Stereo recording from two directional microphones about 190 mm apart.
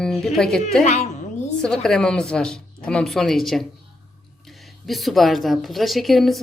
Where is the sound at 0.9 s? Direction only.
35° left (ahead or behind).